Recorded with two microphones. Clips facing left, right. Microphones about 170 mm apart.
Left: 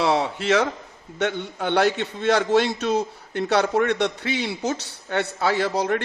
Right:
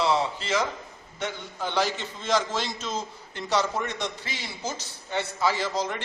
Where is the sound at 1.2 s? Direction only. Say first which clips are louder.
Left 7 dB; 65° left (ahead or behind).